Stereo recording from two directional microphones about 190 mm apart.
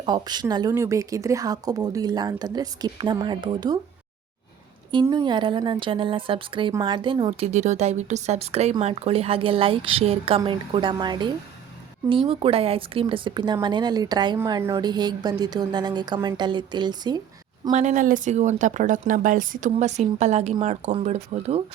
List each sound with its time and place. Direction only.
0.0 s speech: 25° right (ahead or behind)
5.0 s speech: 20° right (ahead or behind)
17.7 s speech: 40° right (ahead or behind)